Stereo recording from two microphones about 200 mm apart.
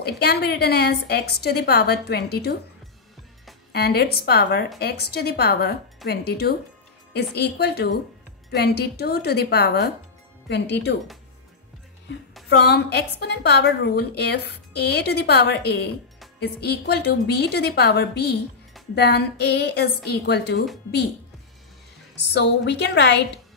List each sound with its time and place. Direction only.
0.0 s a woman's voice: 55° left (ahead or behind)
3.7 s a woman's voice: 55° left (ahead or behind)
12.4 s a woman's voice: 55° left (ahead or behind)
22.3 s a woman's voice: 60° left (ahead or behind)